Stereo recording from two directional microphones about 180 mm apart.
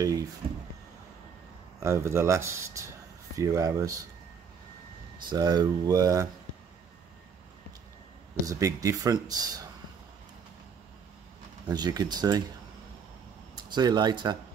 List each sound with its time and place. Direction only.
0.0 s speech: 20° right (ahead or behind)
1.8 s speech: 15° right (ahead or behind)
5.3 s speech: 25° right (ahead or behind)
8.5 s speech: 20° right (ahead or behind)
11.7 s speech: 20° right (ahead or behind)
13.7 s speech: 25° right (ahead or behind)